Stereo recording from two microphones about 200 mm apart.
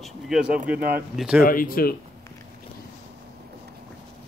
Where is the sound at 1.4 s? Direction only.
45° left (ahead or behind).